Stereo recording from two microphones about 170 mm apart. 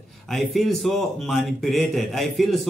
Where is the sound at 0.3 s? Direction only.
Centre (ahead or behind).